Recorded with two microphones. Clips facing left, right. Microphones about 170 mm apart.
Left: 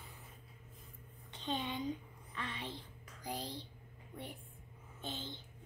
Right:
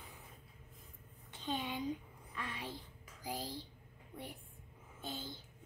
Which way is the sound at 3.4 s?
20° left (ahead or behind).